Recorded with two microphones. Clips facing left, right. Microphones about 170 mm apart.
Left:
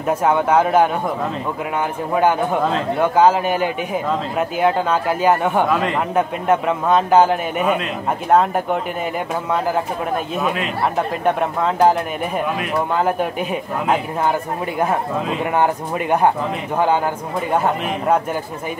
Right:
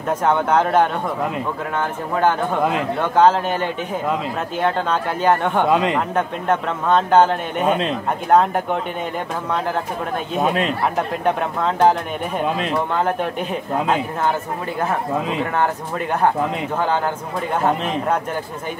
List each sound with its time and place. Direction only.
0.1 s a man's voice: 10° left (ahead or behind)
5.7 s speech: 20° right (ahead or behind)
6.1 s a man's voice: 10° left (ahead or behind)
7.6 s a man's voice: 30° right (ahead or behind)
8.3 s speech: centre (ahead or behind)
10.4 s a man's voice: 35° right (ahead or behind)
11.2 s speech: 5° left (ahead or behind)
13.0 s a man's voice: 5° left (ahead or behind)
15.5 s a man's voice: 15° left (ahead or behind)